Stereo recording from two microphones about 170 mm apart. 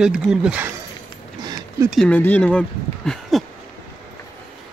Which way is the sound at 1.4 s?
25° right (ahead or behind).